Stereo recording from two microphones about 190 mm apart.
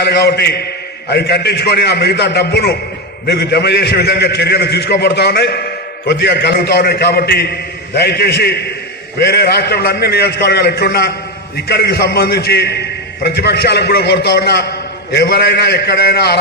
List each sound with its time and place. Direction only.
0.0 s a man's voice: 60° left (ahead or behind)